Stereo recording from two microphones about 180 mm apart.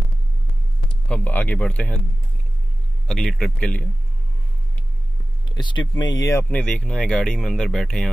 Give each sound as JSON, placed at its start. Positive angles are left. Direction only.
{"t": 0.8, "sound": "speech", "side_deg": 5}
{"t": 3.1, "sound": "speech", "side_deg": 0}
{"t": 5.6, "sound": "speech", "side_deg": 25}
{"t": 6.5, "sound": "speech", "side_deg": 5}